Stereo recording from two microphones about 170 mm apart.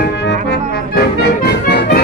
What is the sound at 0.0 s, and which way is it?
Brass instrument, 85° left.